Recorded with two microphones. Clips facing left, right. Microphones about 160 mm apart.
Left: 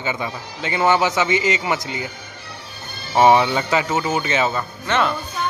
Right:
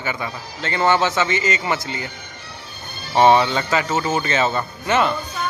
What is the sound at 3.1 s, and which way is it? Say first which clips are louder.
A man's voice: even; 15° left (ahead or behind).